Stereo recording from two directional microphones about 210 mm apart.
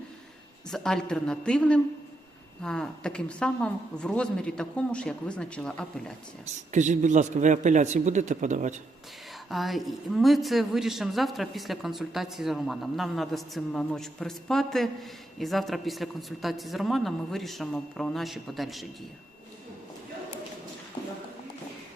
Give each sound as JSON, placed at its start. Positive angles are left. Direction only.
{"t": 0.7, "sound": "a woman's voice", "side_deg": 0}
{"t": 6.4, "sound": "a man's voice", "side_deg": -35}
{"t": 9.5, "sound": "a woman's voice", "side_deg": 0}